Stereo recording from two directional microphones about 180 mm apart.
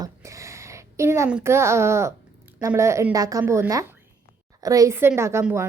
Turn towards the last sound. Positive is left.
turn(degrees=-15)  # may be behind; listen again after turning